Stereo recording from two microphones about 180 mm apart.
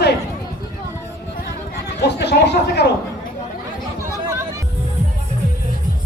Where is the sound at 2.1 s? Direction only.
70° left (ahead or behind).